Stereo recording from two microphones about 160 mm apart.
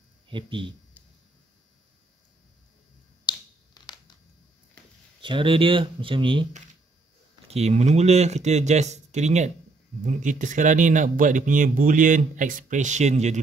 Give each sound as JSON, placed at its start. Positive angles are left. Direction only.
{"t": 0.3, "sound": "speech", "side_deg": -30}
{"t": 3.3, "sound": "finger snapping", "side_deg": 25}
{"t": 5.2, "sound": "speech", "side_deg": -30}
{"t": 7.4, "sound": "speech", "side_deg": -40}